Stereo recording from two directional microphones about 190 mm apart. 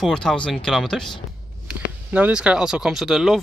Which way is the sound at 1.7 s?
10° right (ahead or behind).